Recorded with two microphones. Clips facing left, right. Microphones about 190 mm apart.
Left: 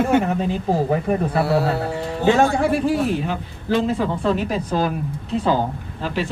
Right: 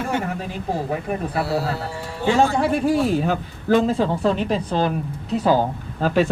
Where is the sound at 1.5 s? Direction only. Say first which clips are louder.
Left 4 dB; 60° left (ahead or behind).